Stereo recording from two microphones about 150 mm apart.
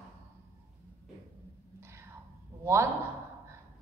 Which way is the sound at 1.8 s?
15° right (ahead or behind).